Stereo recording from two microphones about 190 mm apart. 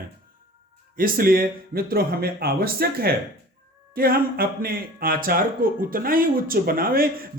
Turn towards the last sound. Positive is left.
turn(degrees=-50)  # may be behind; listen again after turning